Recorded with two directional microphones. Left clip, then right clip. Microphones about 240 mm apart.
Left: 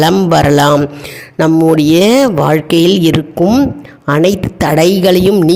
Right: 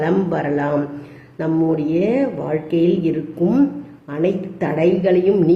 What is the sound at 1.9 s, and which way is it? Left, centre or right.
A woman's voice, left.